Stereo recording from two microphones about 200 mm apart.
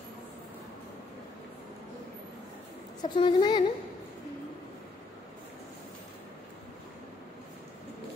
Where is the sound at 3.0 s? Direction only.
25° left (ahead or behind).